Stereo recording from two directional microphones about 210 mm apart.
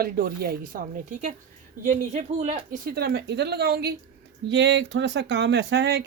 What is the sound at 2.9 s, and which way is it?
A woman's voice, 50° right (ahead or behind).